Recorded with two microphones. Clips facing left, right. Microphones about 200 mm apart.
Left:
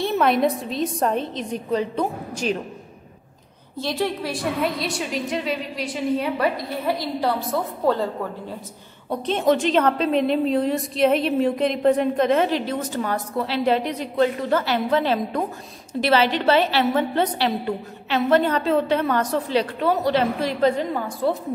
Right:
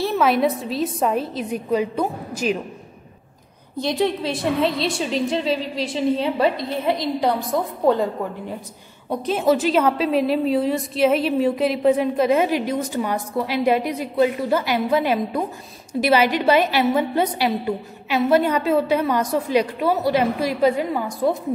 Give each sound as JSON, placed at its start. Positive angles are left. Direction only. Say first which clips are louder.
{"t": 0.0, "sound": "a woman's voice", "louder": "right 1 dB", "side_deg": 0}
{"t": 3.7, "sound": "a woman's voice", "louder": "right 3 dB", "side_deg": -20}